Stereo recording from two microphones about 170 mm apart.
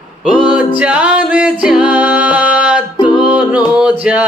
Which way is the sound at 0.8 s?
5° right (ahead or behind).